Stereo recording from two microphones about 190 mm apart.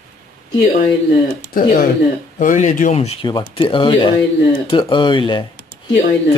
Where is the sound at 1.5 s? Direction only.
50° left (ahead or behind).